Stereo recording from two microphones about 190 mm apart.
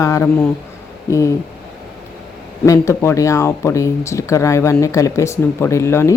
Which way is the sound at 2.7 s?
15° left (ahead or behind).